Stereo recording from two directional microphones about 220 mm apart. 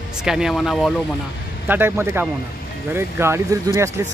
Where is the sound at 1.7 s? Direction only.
10° right (ahead or behind).